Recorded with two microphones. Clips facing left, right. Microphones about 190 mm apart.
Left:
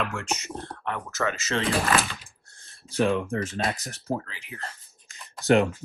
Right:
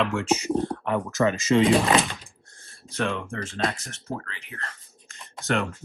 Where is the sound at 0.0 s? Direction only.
Centre (ahead or behind); by 1.5 s 15° right (ahead or behind).